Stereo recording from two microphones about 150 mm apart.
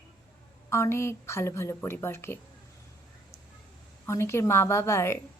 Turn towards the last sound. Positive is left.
turn(degrees=15)  # may be behind; listen again after turning